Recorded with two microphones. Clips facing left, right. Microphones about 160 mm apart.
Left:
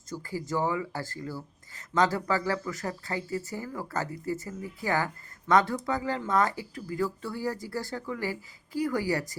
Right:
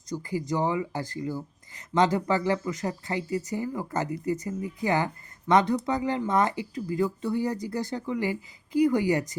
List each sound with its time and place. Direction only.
0.1 s speech: 20° right (ahead or behind)